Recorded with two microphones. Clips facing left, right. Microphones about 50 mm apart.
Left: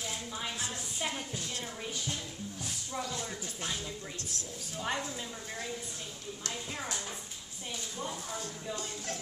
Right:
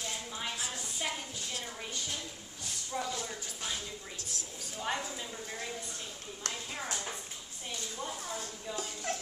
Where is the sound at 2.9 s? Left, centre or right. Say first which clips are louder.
Right 2 dB; centre.